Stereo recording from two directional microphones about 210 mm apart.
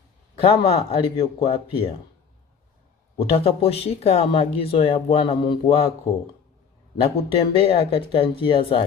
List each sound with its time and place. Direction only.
0.4 s speech: 30° left (ahead or behind)
3.3 s speech: 30° left (ahead or behind)
6.9 s speech: 25° left (ahead or behind)